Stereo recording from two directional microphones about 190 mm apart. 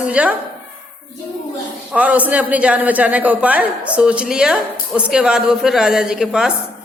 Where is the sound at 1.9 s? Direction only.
5° right (ahead or behind).